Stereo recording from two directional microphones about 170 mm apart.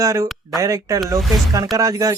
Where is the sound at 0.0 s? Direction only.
20° right (ahead or behind).